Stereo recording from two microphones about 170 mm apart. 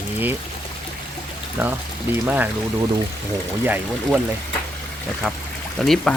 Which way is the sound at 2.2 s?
10° right (ahead or behind).